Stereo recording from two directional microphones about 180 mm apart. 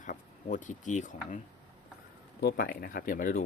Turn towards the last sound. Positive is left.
turn(degrees=50)  # may be behind; listen again after turning